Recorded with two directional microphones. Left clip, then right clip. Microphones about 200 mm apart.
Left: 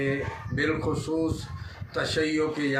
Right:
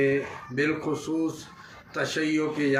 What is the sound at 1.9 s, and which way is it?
Speech, 15° left (ahead or behind).